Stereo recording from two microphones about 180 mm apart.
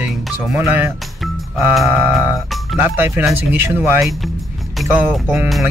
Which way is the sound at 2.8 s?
10° right (ahead or behind).